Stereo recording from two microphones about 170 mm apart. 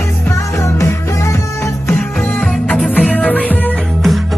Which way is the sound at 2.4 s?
5° left (ahead or behind).